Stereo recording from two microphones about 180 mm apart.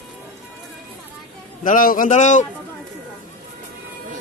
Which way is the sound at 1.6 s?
50° left (ahead or behind).